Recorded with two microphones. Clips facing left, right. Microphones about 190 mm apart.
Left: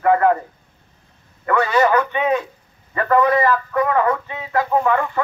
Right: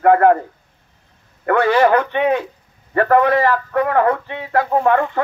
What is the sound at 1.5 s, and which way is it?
Speech, 55° right (ahead or behind).